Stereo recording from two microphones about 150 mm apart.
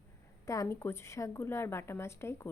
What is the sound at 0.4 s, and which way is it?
A woman's voice, 20° left (ahead or behind).